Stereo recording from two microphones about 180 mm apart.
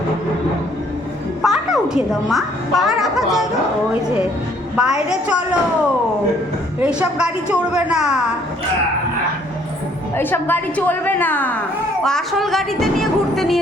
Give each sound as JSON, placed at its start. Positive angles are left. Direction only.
{"t": 1.4, "sound": "a child's voice", "side_deg": 0}
{"t": 4.8, "sound": "a woman's voice", "side_deg": -5}
{"t": 6.7, "sound": "a woman's voice", "side_deg": -5}
{"t": 10.2, "sound": "a woman's voice", "side_deg": 10}